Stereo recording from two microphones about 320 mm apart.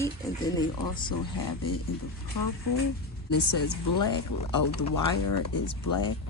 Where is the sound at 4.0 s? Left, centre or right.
Left.